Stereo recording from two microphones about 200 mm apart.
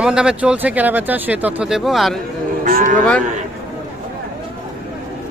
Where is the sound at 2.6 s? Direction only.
40° right (ahead or behind).